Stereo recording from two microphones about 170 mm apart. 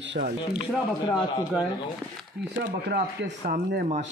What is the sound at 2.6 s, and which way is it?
Speech, 65° right (ahead or behind).